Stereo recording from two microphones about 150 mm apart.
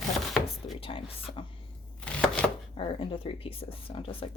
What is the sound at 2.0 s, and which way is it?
Chopping, 5° left (ahead or behind).